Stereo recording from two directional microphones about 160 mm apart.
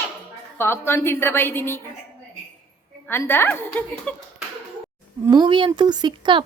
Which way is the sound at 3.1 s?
15° left (ahead or behind).